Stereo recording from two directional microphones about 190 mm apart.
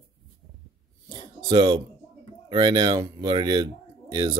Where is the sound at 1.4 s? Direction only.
20° right (ahead or behind).